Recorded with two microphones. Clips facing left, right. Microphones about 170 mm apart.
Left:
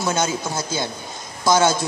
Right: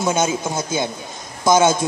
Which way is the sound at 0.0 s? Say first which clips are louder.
Right 3 dB; 20° right (ahead or behind).